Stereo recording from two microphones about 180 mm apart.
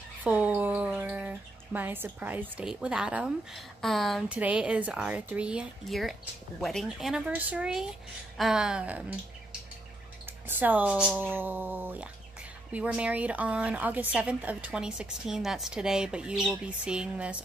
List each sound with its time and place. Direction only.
0.2 s a woman's voice: 10° right (ahead or behind)
10.5 s a woman's voice: 10° right (ahead or behind)